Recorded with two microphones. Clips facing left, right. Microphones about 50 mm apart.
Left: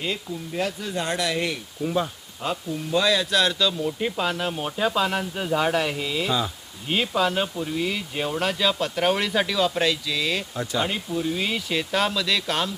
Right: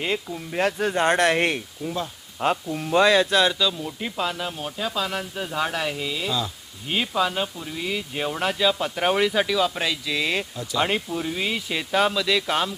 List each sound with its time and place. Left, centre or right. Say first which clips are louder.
0.0 s speech: right 2 dB; right
0.6 s speech: right 7 dB; right
1.8 s speech: left 7 dB; centre
2.4 s speech: right 4 dB; right
3.7 s speech: left 4 dB; centre
10.1 s speech: right 1 dB; right
10.5 s speech: left 3 dB; left
10.8 s speech: right 3 dB; right
11.1 s speech: left 2 dB; centre
11.4 s speech: left 1 dB; centre